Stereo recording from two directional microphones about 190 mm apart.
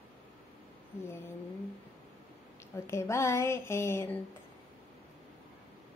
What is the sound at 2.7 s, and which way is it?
Speech, 15° left (ahead or behind).